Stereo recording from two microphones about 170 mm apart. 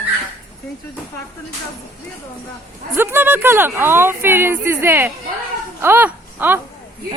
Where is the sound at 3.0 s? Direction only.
10° right (ahead or behind).